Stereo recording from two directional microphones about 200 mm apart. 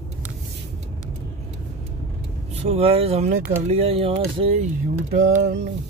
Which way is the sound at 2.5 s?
30° right (ahead or behind).